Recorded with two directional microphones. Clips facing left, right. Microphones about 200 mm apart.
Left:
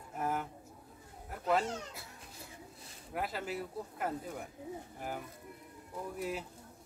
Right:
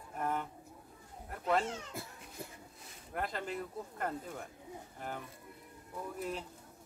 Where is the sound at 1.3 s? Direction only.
Centre (ahead or behind).